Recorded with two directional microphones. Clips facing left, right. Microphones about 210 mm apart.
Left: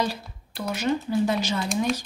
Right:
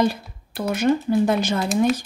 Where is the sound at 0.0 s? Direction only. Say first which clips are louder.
Right 7 dB; 55° right (ahead or behind).